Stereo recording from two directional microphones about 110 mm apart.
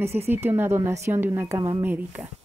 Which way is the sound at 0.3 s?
20° right (ahead or behind).